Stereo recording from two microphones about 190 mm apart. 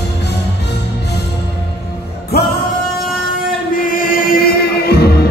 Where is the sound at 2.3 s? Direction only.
55° left (ahead or behind).